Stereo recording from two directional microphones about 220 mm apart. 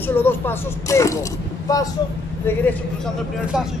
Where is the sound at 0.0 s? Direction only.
10° left (ahead or behind).